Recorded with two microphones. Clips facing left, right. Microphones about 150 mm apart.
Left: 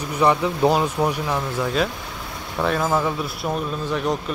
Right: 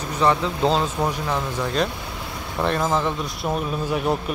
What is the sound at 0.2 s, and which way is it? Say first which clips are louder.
Speech: left 2 dB; 15° left (ahead or behind).